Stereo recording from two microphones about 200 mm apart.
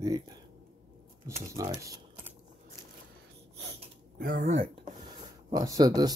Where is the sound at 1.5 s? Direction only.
15° right (ahead or behind).